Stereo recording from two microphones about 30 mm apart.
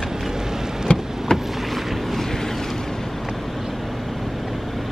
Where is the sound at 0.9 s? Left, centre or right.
Left.